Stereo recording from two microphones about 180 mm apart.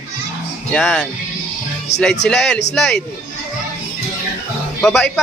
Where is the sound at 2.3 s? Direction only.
5° left (ahead or behind).